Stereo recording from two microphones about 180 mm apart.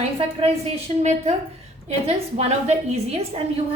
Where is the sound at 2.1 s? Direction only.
35° right (ahead or behind).